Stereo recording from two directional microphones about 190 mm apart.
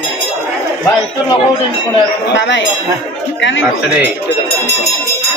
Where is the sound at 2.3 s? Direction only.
70° left (ahead or behind).